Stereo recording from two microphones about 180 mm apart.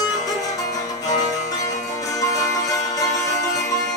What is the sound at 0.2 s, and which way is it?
Music, 20° left (ahead or behind).